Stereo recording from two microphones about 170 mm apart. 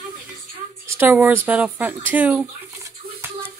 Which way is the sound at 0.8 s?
15° right (ahead or behind).